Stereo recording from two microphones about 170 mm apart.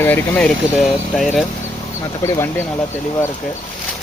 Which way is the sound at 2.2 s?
15° left (ahead or behind).